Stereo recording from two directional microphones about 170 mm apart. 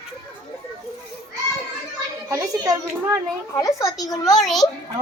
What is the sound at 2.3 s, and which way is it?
Speech, 20° right (ahead or behind).